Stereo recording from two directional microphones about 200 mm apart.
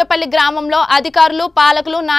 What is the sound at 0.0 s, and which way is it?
A woman's voice, centre (ahead or behind).